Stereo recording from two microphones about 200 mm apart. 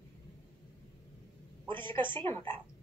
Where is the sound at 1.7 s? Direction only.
25° right (ahead or behind).